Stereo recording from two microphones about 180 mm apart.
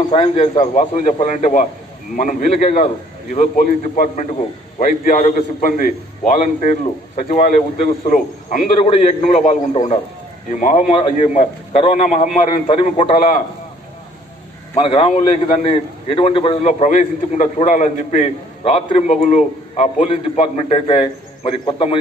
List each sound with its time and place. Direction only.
0.1 s a man's voice: 30° left (ahead or behind)
0.6 s a man's voice: 45° left (ahead or behind)
8.7 s a man's voice: 35° left (ahead or behind)
12.6 s a man's voice: 30° left (ahead or behind)
14.8 s a man's voice: 35° left (ahead or behind)